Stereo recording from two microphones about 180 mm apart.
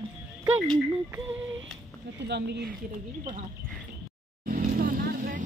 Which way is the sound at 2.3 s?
70° right (ahead or behind).